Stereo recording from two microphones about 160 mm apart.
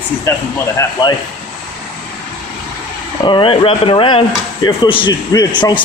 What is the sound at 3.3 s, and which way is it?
A man's voice, 30° left (ahead or behind).